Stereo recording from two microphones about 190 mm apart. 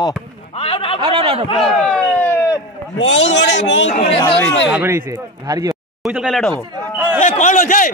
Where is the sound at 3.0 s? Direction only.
80° left.